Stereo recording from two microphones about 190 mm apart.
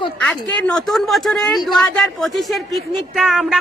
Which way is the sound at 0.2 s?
5° left (ahead or behind).